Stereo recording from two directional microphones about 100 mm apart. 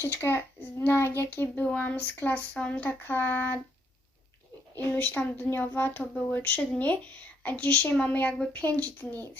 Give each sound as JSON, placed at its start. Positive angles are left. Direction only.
{"t": 0.0, "sound": "a child's voice", "side_deg": 25}
{"t": 4.9, "sound": "speech", "side_deg": 20}